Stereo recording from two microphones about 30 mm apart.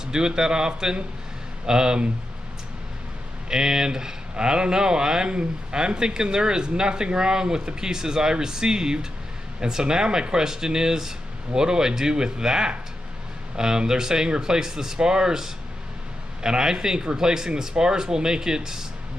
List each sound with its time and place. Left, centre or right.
0.0 s speech: right
3.4 s speech: right